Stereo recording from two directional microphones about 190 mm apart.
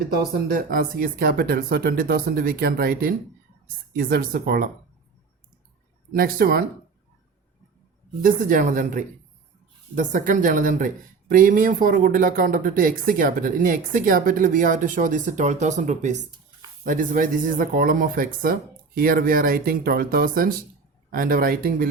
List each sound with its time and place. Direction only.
0.2 s speech: 50° right (ahead or behind)
6.1 s speech: 50° right (ahead or behind)
8.2 s speech: 45° right (ahead or behind)